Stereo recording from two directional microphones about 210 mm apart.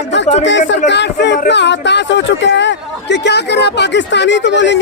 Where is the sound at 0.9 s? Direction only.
55° left (ahead or behind).